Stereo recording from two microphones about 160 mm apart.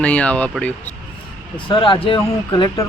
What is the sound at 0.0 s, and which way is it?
Speech, 10° left (ahead or behind).